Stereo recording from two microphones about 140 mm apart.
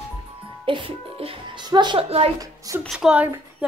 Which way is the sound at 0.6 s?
40° right (ahead or behind).